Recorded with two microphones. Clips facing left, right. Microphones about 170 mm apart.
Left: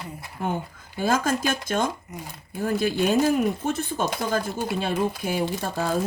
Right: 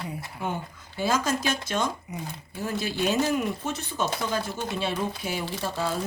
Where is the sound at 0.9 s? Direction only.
50° left (ahead or behind).